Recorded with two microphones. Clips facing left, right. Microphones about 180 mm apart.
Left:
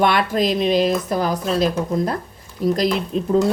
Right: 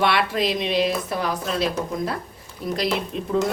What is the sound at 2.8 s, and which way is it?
Speech, 40° left (ahead or behind).